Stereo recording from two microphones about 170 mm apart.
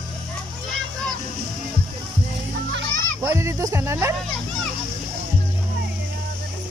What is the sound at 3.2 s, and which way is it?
Music, 15° right (ahead or behind).